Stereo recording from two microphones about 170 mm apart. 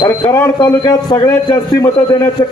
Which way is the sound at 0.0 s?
20° left (ahead or behind).